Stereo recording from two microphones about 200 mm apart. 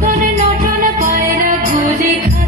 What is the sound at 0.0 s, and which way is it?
Music, 40° right (ahead or behind).